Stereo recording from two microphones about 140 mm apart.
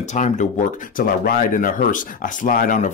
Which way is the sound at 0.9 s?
80° left.